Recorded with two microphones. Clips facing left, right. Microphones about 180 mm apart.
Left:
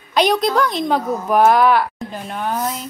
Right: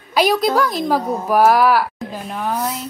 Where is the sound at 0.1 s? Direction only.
5° right (ahead or behind).